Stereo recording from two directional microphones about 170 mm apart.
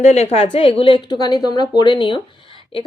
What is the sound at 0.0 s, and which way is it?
A woman's voice, 40° left (ahead or behind).